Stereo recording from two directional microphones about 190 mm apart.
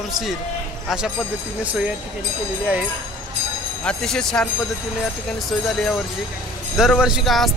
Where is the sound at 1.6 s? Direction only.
5° right (ahead or behind).